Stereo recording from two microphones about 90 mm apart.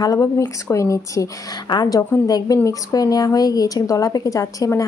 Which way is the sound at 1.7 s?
55° left (ahead or behind).